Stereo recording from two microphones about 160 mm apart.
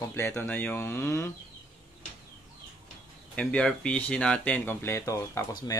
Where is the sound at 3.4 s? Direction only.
5° left (ahead or behind).